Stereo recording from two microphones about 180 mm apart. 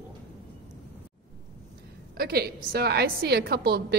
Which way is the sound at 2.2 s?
60° right (ahead or behind).